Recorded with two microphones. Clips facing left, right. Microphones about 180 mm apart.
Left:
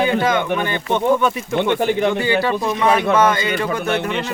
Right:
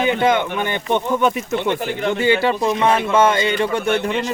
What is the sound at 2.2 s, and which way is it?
Speech, 20° right (ahead or behind).